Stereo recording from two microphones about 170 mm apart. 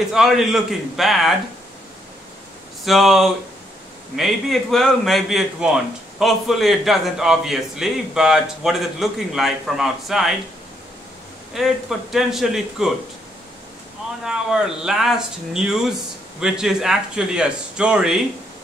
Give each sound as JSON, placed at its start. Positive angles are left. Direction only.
{"t": 0.1, "sound": "a man's voice", "side_deg": 0}
{"t": 2.8, "sound": "a man's voice", "side_deg": 0}
{"t": 11.5, "sound": "a man's voice", "side_deg": 0}
{"t": 14.2, "sound": "a man's voice", "side_deg": -5}